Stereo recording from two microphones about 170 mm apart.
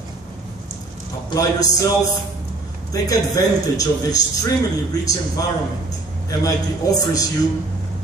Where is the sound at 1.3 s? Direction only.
20° left (ahead or behind).